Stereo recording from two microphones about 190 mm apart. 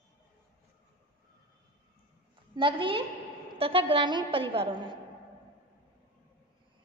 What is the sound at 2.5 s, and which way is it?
A woman's voice, 25° right (ahead or behind).